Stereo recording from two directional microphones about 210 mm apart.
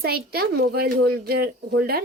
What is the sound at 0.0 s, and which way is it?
Speech, 45° right (ahead or behind).